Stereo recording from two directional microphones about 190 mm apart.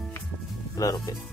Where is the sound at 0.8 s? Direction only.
15° left (ahead or behind).